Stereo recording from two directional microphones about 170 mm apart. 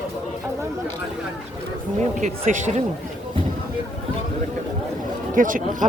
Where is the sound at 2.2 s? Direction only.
45° right (ahead or behind).